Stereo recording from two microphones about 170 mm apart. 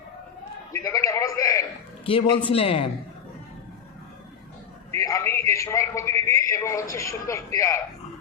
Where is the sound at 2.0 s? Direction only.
30° left (ahead or behind).